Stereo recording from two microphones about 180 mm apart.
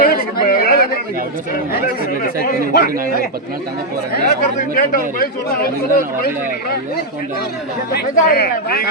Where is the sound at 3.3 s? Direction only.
55° right (ahead or behind).